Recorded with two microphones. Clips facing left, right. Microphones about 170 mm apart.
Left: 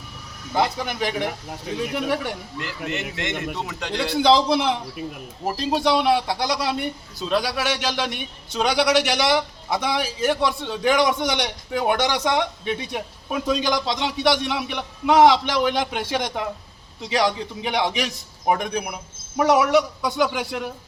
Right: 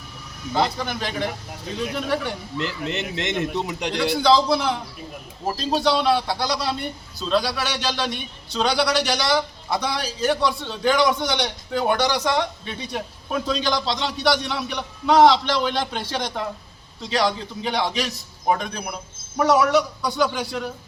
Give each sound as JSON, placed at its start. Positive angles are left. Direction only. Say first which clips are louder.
{"t": 0.5, "sound": "a man's voice", "louder": "even", "side_deg": 15}
{"t": 2.6, "sound": "a man's voice", "louder": "right 4 dB", "side_deg": -20}
{"t": 4.2, "sound": "a man's voice", "louder": "left 2 dB", "side_deg": 20}